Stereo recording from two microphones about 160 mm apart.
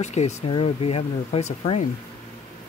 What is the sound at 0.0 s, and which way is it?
Speech, 45° left (ahead or behind).